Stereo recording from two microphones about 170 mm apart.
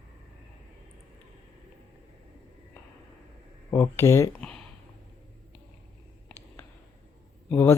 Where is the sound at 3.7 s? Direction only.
15° left (ahead or behind).